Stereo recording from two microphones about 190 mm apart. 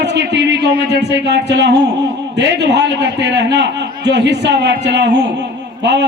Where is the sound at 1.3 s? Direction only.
65° right (ahead or behind).